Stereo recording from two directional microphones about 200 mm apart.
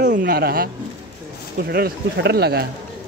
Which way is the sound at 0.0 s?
55° right (ahead or behind).